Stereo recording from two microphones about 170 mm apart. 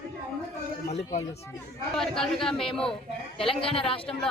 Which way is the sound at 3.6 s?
35° left (ahead or behind).